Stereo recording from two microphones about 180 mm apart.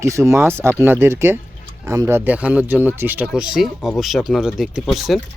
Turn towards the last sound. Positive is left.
turn(degrees=0)  # may be behind; listen again after turning